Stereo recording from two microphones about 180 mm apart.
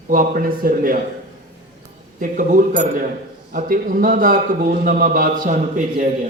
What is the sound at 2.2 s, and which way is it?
A man's voice, 45° right (ahead or behind).